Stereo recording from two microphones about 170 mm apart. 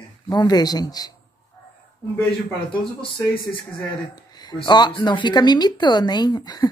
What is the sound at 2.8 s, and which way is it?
Speech, 30° left (ahead or behind).